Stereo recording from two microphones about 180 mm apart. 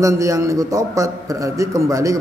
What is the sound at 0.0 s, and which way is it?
A man's voice, 15° right (ahead or behind).